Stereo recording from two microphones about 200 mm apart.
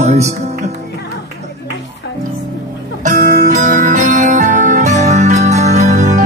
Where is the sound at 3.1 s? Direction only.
40° right (ahead or behind).